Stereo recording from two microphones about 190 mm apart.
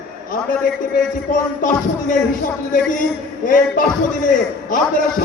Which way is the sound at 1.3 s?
45° left (ahead or behind).